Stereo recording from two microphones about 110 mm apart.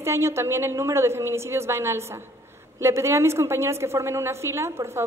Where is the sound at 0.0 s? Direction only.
25° right (ahead or behind).